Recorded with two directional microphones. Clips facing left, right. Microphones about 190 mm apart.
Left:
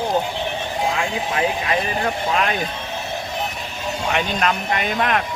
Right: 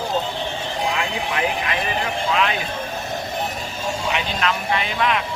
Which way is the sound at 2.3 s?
45° left (ahead or behind).